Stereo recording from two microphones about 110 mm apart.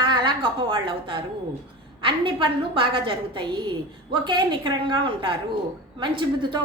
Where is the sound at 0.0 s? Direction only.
45° right (ahead or behind).